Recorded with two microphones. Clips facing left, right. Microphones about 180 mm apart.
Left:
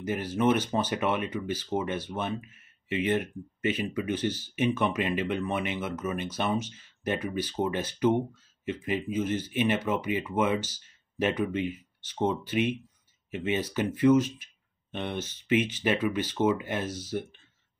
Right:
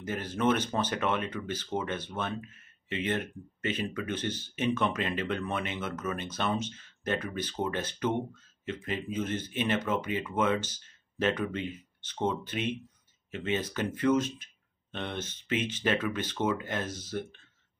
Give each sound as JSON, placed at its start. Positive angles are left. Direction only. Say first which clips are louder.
{"t": 0.0, "sound": "speech", "louder": "left 3 dB", "side_deg": 15}